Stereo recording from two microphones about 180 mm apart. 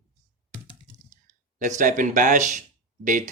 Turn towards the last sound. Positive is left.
turn(degrees=-45)  # may be behind; listen again after turning